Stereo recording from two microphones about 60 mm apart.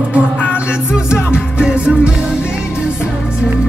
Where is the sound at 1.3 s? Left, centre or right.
Centre.